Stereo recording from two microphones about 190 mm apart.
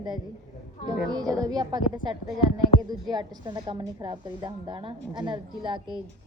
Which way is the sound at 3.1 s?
20° right (ahead or behind).